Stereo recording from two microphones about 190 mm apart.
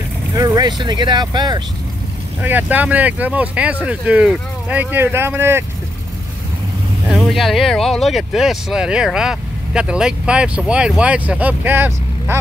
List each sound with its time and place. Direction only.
0.3 s speech: 15° right (ahead or behind)
2.4 s speech: 10° right (ahead or behind)
7.1 s speech: centre (ahead or behind)